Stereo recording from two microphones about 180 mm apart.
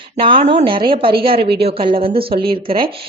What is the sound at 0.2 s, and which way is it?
Speech, 30° right (ahead or behind).